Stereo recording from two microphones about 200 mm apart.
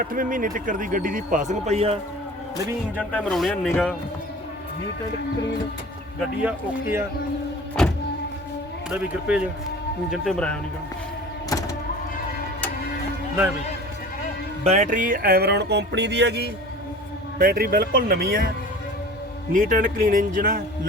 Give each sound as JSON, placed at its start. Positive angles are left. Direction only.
{"t": 0.0, "sound": "speech", "side_deg": -45}
{"t": 3.0, "sound": "speech", "side_deg": 5}
{"t": 6.1, "sound": "speech", "side_deg": -10}
{"t": 7.8, "sound": "music", "side_deg": 0}
{"t": 8.9, "sound": "speech", "side_deg": -5}
{"t": 14.6, "sound": "music", "side_deg": -35}
{"t": 19.5, "sound": "music", "side_deg": -45}